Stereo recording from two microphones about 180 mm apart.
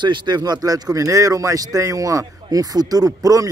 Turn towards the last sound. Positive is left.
turn(degrees=-20)  # may be behind; listen again after turning